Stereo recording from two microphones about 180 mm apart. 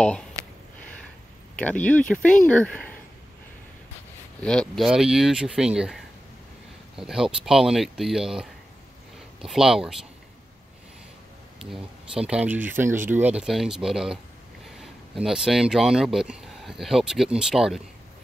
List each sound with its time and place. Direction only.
1.6 s speech: 10° left (ahead or behind)
4.4 s speech: 5° left (ahead or behind)
11.7 s speech: 5° right (ahead or behind)